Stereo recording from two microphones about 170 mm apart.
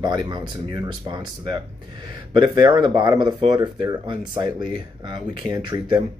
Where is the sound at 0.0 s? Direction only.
25° right (ahead or behind).